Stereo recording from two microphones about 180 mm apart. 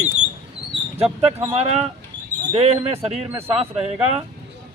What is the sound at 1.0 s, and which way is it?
Speech, 35° right (ahead or behind).